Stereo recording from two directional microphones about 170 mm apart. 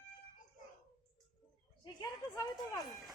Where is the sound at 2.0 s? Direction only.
25° left (ahead or behind).